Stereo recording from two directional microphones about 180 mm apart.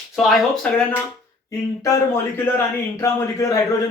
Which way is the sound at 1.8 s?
15° left (ahead or behind).